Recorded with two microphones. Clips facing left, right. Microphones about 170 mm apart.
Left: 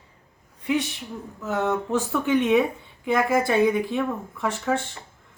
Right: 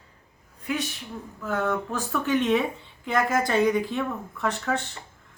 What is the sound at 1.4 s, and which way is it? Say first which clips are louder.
Speech: left 2 dB; 20° left (ahead or behind).